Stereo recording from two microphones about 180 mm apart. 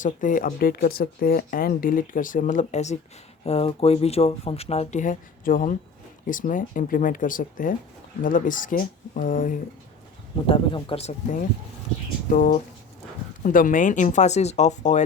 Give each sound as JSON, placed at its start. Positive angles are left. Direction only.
{"t": 0.0, "sound": "speech", "side_deg": 45}
{"t": 10.4, "sound": "speech", "side_deg": 30}
{"t": 12.3, "sound": "speech", "side_deg": 50}